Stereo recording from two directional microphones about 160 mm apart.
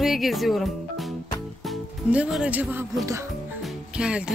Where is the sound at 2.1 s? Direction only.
5° right (ahead or behind).